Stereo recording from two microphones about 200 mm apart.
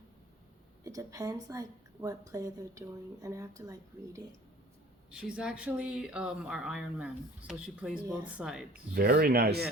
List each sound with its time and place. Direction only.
0.9 s a woman's voice: 15° right (ahead or behind)
5.1 s a woman's voice: 5° right (ahead or behind)
8.7 s speech: 50° right (ahead or behind)